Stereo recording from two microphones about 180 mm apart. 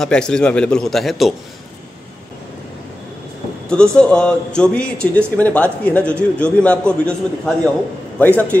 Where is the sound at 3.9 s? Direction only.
5° left (ahead or behind).